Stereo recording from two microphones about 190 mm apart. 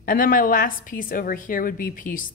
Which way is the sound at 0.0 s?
45° left (ahead or behind).